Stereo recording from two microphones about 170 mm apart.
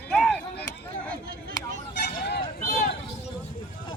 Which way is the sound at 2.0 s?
75° left (ahead or behind).